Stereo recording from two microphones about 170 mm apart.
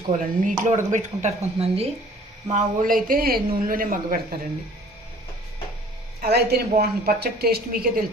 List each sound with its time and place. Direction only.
0.2 s speech: 50° right (ahead or behind)
2.5 s speech: 50° right (ahead or behind)
6.1 s speech: 70° right (ahead or behind)